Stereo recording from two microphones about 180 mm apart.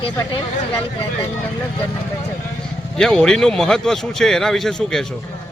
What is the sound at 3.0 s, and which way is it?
Speech, 5° left (ahead or behind).